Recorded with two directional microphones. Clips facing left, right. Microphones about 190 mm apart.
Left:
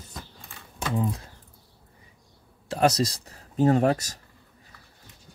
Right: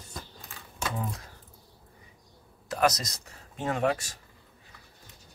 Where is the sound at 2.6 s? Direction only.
30° left (ahead or behind).